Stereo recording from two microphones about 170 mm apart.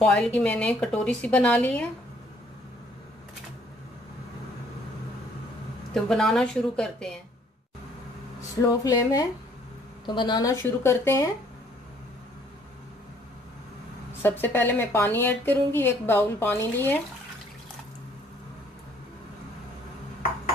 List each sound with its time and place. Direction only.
0.0 s speech: 5° left (ahead or behind)
5.9 s a woman's voice: 5° left (ahead or behind)
8.5 s speech: 20° left (ahead or behind)
14.2 s speech: 15° left (ahead or behind)